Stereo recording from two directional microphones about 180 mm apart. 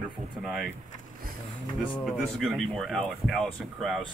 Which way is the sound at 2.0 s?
Centre (ahead or behind).